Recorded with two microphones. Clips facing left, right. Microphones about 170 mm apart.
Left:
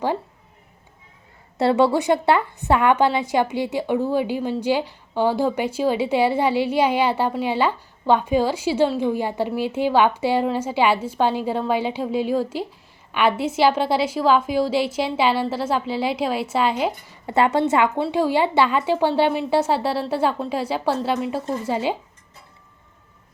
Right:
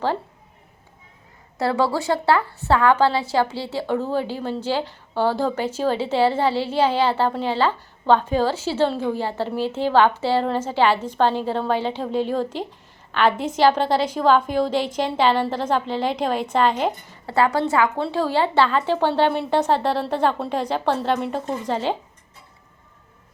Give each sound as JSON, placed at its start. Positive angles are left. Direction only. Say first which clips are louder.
{"t": 1.5, "sound": "a woman's voice", "louder": "left 4 dB", "side_deg": 25}
{"t": 17.3, "sound": "a woman's voice", "louder": "left 1 dB", "side_deg": 20}